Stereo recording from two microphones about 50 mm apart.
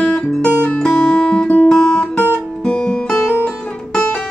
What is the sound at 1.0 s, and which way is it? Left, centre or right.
Music, centre.